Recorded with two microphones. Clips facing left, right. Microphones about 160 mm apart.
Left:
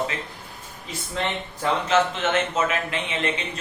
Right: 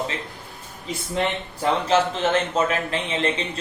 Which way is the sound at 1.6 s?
35° right (ahead or behind).